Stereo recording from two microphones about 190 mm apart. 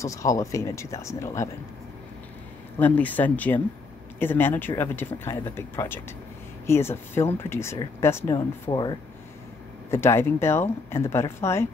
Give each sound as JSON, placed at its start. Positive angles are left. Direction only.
{"t": 0.0, "sound": "speech", "side_deg": 15}
{"t": 2.8, "sound": "speech", "side_deg": 10}